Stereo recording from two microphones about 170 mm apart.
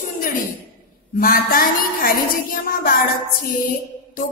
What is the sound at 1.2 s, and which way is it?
A woman's voice, 60° left (ahead or behind).